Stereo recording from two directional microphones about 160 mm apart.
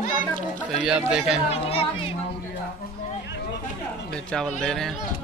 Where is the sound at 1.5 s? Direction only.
40° left (ahead or behind).